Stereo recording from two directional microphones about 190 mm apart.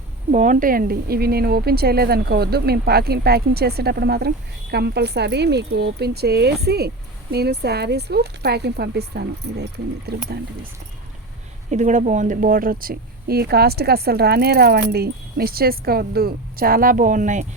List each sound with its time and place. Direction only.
0.3 s speech: 40° right (ahead or behind); by 10.7 s 55° right (ahead or behind)
11.7 s speech: 40° right (ahead or behind)